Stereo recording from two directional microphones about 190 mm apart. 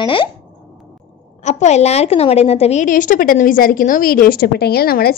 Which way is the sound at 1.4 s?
35° left (ahead or behind).